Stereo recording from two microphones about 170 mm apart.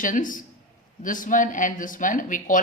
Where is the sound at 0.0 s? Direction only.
50° left (ahead or behind).